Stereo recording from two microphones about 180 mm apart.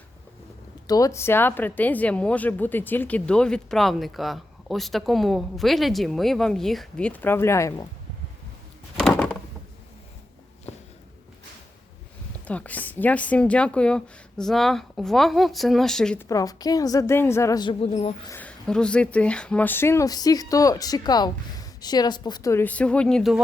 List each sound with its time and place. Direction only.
0.9 s speech: 20° left (ahead or behind)
9.0 s a sound: 5° left (ahead or behind)
12.5 s speech: 10° left (ahead or behind)
16.3 s a woman's voice: 20° left (ahead or behind)
18.3 s speech: 10° left (ahead or behind)